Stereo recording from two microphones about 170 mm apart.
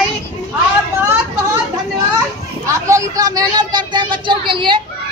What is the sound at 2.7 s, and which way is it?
Speech, 20° right (ahead or behind).